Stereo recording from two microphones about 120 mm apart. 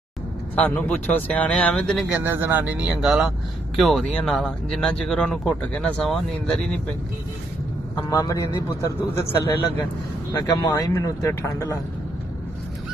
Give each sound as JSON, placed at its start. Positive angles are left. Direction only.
{"t": 0.6, "sound": "speech", "side_deg": 15}
{"t": 2.2, "sound": "speech", "side_deg": -15}
{"t": 8.1, "sound": "a man's voice", "side_deg": 30}
{"t": 10.4, "sound": "a man's voice", "side_deg": 30}